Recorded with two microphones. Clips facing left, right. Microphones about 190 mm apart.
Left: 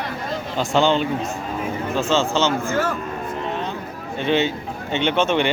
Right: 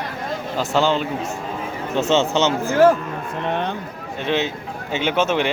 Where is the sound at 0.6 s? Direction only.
5° right (ahead or behind).